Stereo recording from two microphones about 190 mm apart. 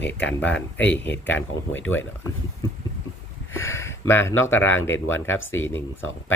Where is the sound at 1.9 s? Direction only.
10° left (ahead or behind).